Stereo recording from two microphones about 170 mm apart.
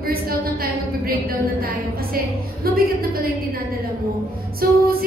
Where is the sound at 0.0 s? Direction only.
60° right (ahead or behind).